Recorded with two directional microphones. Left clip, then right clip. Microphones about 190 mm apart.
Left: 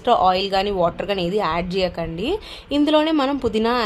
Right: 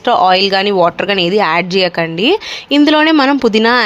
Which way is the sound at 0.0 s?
15° right (ahead or behind).